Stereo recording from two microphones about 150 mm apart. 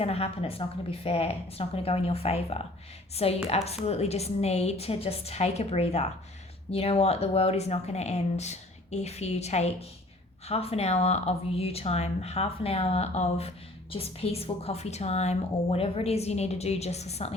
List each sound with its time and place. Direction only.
0.0 s a woman's voice: 40° left (ahead or behind)